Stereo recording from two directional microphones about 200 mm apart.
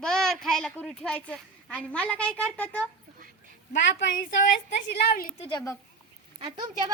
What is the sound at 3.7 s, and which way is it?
Speech, 65° left (ahead or behind).